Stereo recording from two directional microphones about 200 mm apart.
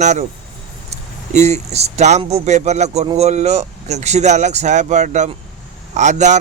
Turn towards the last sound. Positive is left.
turn(degrees=-35)  # may be behind; listen again after turning